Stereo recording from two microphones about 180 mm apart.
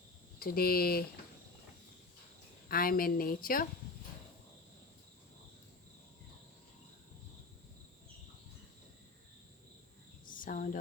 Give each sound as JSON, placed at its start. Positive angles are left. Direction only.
{"t": 0.3, "sound": "speech", "side_deg": 55}
{"t": 2.6, "sound": "a woman's voice", "side_deg": 55}
{"t": 10.2, "sound": "a sound", "side_deg": 50}